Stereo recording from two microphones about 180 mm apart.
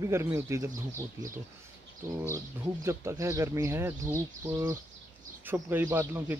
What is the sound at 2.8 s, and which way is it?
Speech, 15° right (ahead or behind).